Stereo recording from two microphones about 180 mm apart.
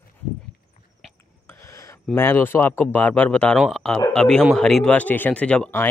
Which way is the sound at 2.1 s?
10° left (ahead or behind).